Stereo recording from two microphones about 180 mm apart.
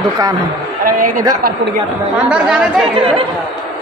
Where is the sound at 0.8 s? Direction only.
50° right (ahead or behind).